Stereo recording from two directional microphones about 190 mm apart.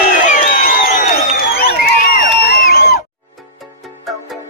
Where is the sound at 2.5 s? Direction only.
55° left (ahead or behind).